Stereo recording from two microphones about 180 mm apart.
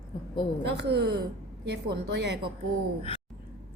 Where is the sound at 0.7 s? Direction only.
65° right (ahead or behind).